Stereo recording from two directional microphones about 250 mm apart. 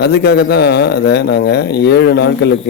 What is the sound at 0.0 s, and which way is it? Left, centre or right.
Speech, left.